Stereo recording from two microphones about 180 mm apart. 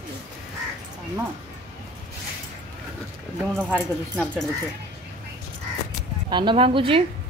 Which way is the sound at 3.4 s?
5° right (ahead or behind).